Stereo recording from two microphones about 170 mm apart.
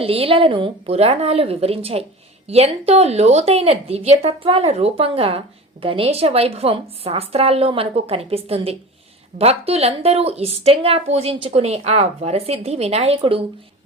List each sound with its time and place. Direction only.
0.0 s a woman's voice: 35° right (ahead or behind)